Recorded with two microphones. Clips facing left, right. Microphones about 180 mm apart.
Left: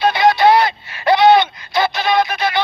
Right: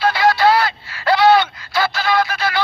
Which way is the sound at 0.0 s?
20° left (ahead or behind).